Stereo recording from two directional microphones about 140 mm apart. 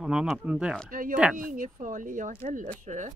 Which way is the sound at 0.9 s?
80° right.